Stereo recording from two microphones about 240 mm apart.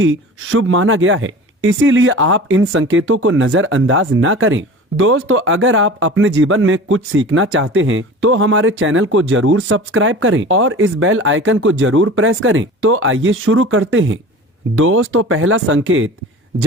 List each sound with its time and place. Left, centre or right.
0.0 s speech: right